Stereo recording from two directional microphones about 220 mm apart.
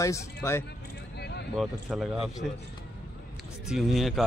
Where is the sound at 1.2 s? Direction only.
50° left (ahead or behind).